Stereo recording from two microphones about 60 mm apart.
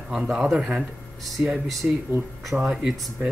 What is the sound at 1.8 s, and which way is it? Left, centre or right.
Speech, right.